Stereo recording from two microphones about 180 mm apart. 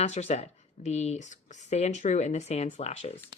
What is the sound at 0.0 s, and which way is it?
Speech, 40° left (ahead or behind).